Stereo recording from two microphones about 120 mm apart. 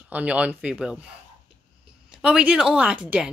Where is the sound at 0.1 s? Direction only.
10° right (ahead or behind).